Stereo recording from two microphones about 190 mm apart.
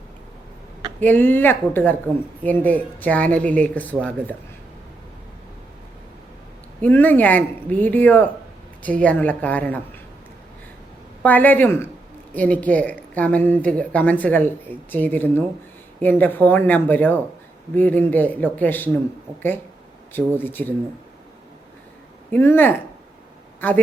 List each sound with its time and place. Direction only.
0.9 s speech: 10° left (ahead or behind)
6.8 s speech: 10° left (ahead or behind)
11.2 s speech: 10° left (ahead or behind)
20.4 s speech: 10° left (ahead or behind)
22.3 s speech: 10° left (ahead or behind)